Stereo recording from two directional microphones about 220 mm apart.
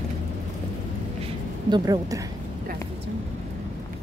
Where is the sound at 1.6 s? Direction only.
20° right (ahead or behind).